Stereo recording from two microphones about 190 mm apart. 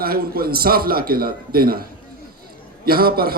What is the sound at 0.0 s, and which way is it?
A man's voice, 50° right (ahead or behind).